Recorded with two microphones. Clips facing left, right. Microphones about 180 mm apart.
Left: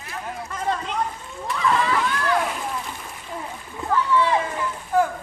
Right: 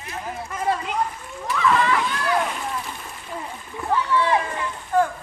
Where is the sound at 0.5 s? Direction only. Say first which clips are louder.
Right 2 dB; 10° right (ahead or behind).